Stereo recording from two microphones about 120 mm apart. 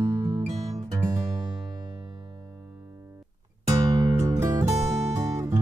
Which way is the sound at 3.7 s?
25° right (ahead or behind).